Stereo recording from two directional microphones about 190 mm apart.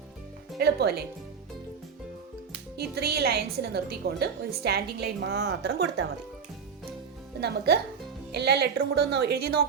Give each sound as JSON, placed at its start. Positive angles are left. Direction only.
{"t": 0.6, "sound": "a woman's voice", "side_deg": -60}
{"t": 2.7, "sound": "a woman's voice", "side_deg": -55}
{"t": 7.4, "sound": "a woman's voice", "side_deg": -60}